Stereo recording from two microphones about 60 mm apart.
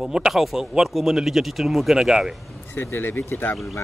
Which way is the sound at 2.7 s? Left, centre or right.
Left.